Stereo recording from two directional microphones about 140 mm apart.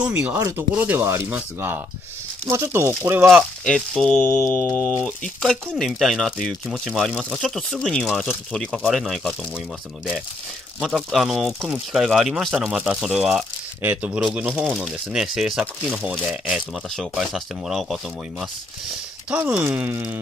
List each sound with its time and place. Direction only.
0.0 s speech: 15° right (ahead or behind)
3.6 s speech: 5° left (ahead or behind)
10.8 s speech: 5° right (ahead or behind)
16.9 s speech: centre (ahead or behind)
19.3 s speech: 15° right (ahead or behind)